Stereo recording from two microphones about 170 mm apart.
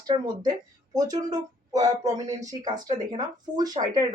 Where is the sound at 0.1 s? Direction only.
25° right (ahead or behind).